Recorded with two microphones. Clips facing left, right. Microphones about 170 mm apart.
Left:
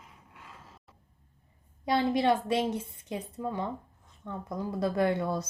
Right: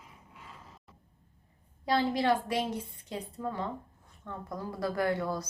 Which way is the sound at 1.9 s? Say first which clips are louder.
Left 2 dB; 20° left (ahead or behind).